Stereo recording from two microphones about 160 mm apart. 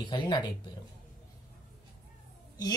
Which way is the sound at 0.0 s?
30° left (ahead or behind).